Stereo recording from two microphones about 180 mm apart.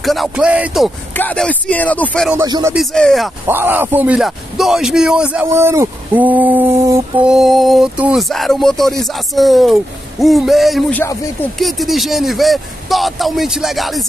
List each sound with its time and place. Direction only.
0.0 s speech: centre (ahead or behind)
1.1 s speech: 10° left (ahead or behind)
2.4 s speech: 20° right (ahead or behind)
2.7 s speech: centre (ahead or behind)
3.4 s a man's voice: 10° right (ahead or behind)
7.2 s speech: centre (ahead or behind)